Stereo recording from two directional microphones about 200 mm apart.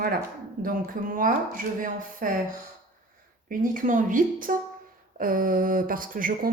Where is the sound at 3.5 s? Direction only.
45° right (ahead or behind).